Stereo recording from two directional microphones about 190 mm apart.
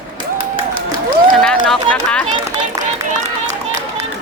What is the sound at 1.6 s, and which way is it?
Run, centre (ahead or behind).